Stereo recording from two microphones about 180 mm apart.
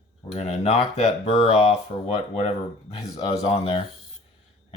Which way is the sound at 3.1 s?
30° left (ahead or behind).